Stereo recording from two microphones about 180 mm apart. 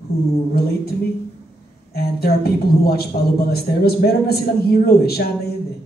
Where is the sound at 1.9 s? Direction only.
60° left (ahead or behind).